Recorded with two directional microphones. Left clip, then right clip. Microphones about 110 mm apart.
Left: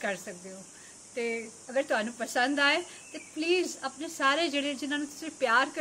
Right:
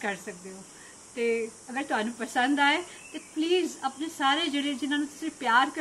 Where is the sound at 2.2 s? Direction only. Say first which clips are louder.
Right 2 dB; 35° left (ahead or behind).